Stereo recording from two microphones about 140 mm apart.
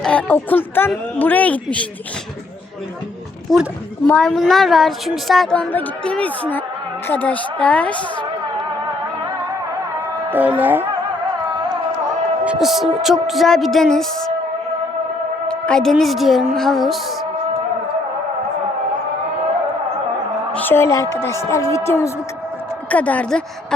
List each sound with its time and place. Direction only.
0.0 s a woman's voice: 10° left (ahead or behind)
4.0 s a woman's voice: 5° left (ahead or behind)
10.2 s speech: 15° right (ahead or behind)
10.6 s music: 15° right (ahead or behind)
12.5 s speech: centre (ahead or behind)
15.4 s speech: 5° left (ahead or behind)
20.5 s a woman's voice: 15° left (ahead or behind)
22.9 s a woman's voice: 10° left (ahead or behind)